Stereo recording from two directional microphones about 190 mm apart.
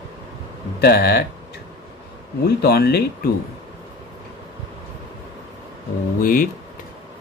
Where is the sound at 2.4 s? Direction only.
55° left (ahead or behind).